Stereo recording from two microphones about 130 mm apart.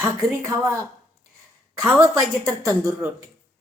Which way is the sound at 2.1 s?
20° right (ahead or behind).